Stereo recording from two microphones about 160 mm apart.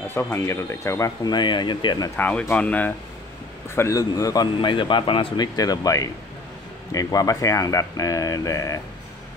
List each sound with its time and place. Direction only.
0.1 s speech: 15° left (ahead or behind)
2.1 s speech: 10° left (ahead or behind)